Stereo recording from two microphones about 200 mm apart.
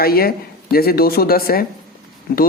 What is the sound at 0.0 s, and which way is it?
A woman's voice, 50° left (ahead or behind).